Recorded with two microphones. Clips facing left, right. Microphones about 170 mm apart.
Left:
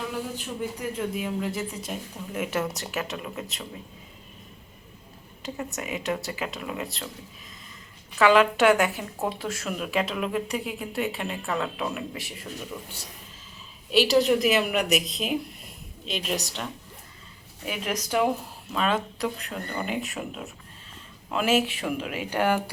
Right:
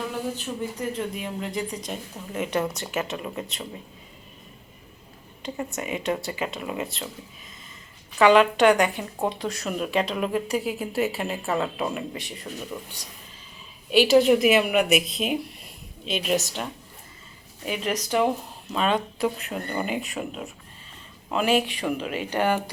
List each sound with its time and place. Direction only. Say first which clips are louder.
0.9 s speech: left 1 dB; 5° left (ahead or behind)
5.4 s speech: right 2 dB; centre (ahead or behind)
8.2 s speech: right 2 dB; centre (ahead or behind)
13.9 s speech: right 3 dB; centre (ahead or behind)
17.7 s speech: right 3 dB; 10° left (ahead or behind); by 19.9 s 10° right (ahead or behind)
19.9 s speech: right 1 dB; centre (ahead or behind)